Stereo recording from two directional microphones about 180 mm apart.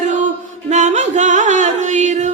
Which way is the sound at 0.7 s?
40° right (ahead or behind).